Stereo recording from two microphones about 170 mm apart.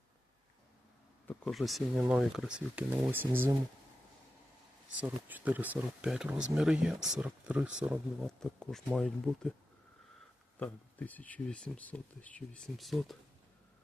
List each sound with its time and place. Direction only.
1.3 s speech: centre (ahead or behind)
4.9 s speech: 10° right (ahead or behind)
10.6 s speech: 10° left (ahead or behind)